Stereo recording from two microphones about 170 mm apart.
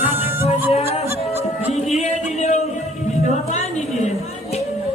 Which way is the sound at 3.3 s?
40° left (ahead or behind).